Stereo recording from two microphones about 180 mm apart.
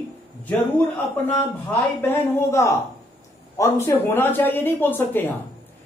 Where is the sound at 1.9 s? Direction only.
10° left (ahead or behind).